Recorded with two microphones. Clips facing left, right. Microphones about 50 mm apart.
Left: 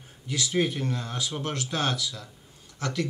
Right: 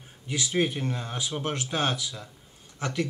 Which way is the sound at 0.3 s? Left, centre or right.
Centre.